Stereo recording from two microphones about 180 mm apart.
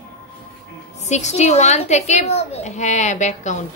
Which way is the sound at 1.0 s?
40° left (ahead or behind).